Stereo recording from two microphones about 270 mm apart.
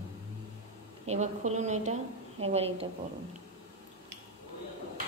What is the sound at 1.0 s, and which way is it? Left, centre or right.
A woman's voice, right.